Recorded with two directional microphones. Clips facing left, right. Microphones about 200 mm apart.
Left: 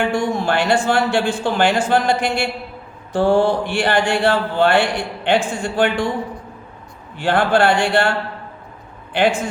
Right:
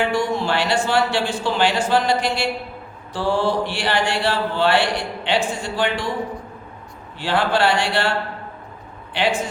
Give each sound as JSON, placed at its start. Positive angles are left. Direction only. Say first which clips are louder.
{"t": 0.0, "sound": "mantra", "louder": "left 2 dB", "side_deg": 50}
{"t": 7.2, "sound": "mantra", "louder": "left 4 dB", "side_deg": 50}
{"t": 9.1, "sound": "mantra", "louder": "left 4 dB", "side_deg": 50}